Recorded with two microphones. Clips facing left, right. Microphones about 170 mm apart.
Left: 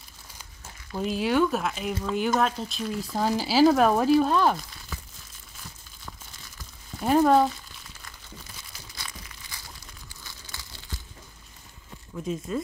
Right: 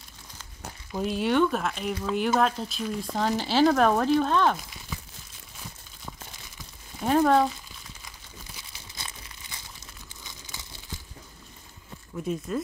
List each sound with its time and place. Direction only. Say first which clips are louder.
0.9 s speech: even; centre (ahead or behind)
7.1 s speech: left 1 dB; 5° left (ahead or behind)
8.9 s crumpling: even; 25° right (ahead or behind)